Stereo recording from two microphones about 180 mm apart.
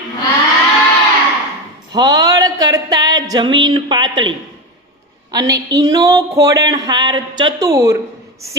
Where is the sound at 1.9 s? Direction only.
20° right (ahead or behind).